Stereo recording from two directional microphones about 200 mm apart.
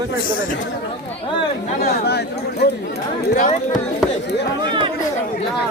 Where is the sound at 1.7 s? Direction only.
50° left (ahead or behind).